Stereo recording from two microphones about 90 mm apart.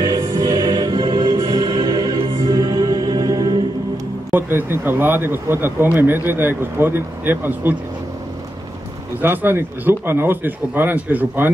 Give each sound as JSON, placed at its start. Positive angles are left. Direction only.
{"t": 0.0, "sound": "music", "side_deg": -40}
{"t": 1.4, "sound": "music", "side_deg": -40}
{"t": 2.1, "sound": "music", "side_deg": -65}
{"t": 2.8, "sound": "music", "side_deg": -45}
{"t": 4.3, "sound": "speech", "side_deg": -25}
{"t": 9.2, "sound": "speech", "side_deg": -20}